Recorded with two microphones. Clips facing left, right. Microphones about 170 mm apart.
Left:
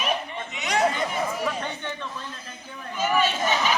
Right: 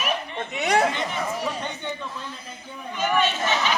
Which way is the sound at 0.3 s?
55° right (ahead or behind).